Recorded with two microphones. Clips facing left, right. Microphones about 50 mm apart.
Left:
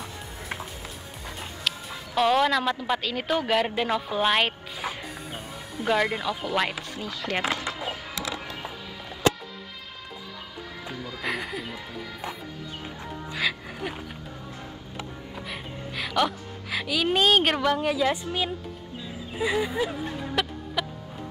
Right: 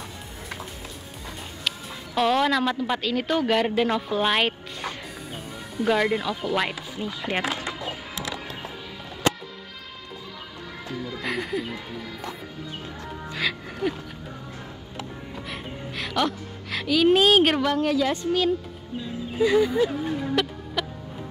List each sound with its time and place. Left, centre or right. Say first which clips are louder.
2.1 s speech: even; centre
7.0 s speech: right 3 dB; centre
11.1 s speech: right 2 dB; centre
13.3 s music: even; centre
15.3 s music: right 1 dB; centre
19.0 s speech: right 5 dB; centre